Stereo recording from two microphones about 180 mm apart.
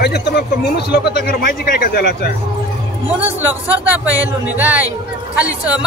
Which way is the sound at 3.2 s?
10° right (ahead or behind).